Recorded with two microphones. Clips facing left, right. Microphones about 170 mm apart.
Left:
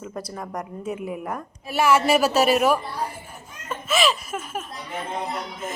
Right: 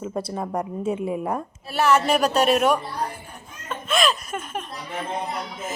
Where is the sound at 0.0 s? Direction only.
25° right (ahead or behind).